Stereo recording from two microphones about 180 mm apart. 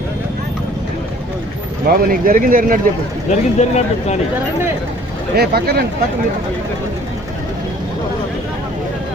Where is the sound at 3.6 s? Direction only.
40° left (ahead or behind).